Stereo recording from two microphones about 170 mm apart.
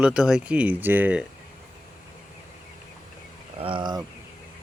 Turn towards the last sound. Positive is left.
turn(degrees=-25)  # may be behind; listen again after turning